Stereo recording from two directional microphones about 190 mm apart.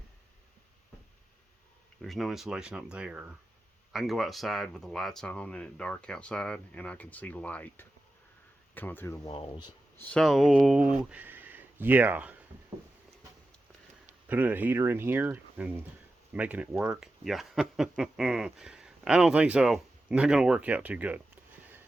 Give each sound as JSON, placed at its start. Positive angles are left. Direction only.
{"t": 2.0, "sound": "speech", "side_deg": 0}
{"t": 9.2, "sound": "speech", "side_deg": 25}
{"t": 10.0, "sound": "speech", "side_deg": 5}
{"t": 14.3, "sound": "speech", "side_deg": -10}